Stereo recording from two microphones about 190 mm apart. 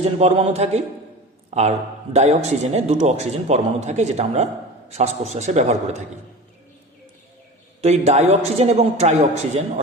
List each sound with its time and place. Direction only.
0.0 s a man's voice: 35° right (ahead or behind)
7.8 s a man's voice: 35° right (ahead or behind)